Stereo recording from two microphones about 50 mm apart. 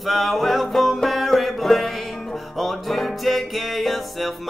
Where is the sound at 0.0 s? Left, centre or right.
Centre.